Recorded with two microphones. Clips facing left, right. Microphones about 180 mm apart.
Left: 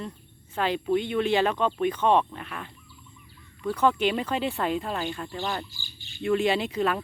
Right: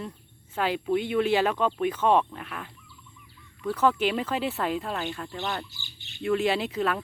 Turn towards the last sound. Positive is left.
turn(degrees=0)  # may be behind; listen again after turning